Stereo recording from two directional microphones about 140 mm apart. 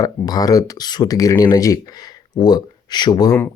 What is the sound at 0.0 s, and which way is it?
Speech, 25° left (ahead or behind).